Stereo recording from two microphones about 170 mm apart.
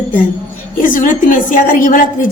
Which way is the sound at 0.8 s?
50° left (ahead or behind).